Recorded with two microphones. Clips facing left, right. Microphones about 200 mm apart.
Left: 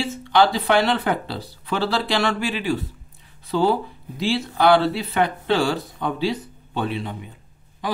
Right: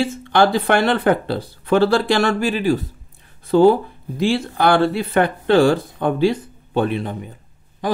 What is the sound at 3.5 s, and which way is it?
Speech, 50° right (ahead or behind).